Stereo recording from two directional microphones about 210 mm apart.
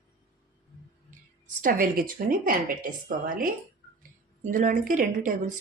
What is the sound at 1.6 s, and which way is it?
A woman's voice, 40° right (ahead or behind).